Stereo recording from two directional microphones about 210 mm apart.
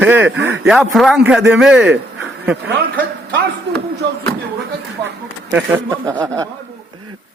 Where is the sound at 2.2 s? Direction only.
5° right (ahead or behind).